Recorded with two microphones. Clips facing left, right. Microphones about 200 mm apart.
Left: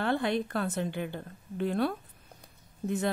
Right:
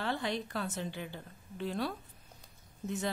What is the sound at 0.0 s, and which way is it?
A woman's voice, 55° left (ahead or behind).